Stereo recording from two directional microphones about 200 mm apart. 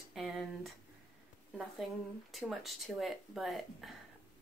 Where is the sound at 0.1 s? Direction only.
Centre (ahead or behind).